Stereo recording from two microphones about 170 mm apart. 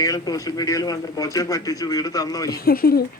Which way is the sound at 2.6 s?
60° left (ahead or behind).